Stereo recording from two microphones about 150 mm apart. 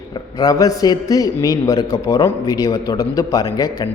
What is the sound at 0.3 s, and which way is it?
A man's voice, 25° left (ahead or behind).